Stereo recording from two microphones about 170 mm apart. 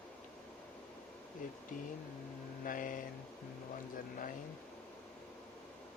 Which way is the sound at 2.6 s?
50° left (ahead or behind).